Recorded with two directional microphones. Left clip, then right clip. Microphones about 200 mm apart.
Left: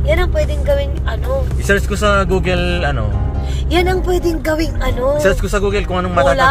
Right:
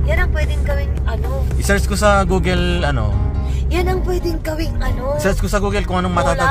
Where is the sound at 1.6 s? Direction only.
15° right (ahead or behind).